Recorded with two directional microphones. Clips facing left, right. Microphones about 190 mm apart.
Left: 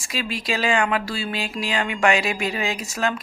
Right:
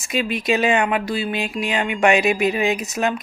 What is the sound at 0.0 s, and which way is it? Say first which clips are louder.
Speech: right 6 dB; 20° right (ahead or behind).